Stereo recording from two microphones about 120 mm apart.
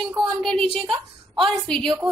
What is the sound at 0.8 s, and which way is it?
Speech, 45° right (ahead or behind).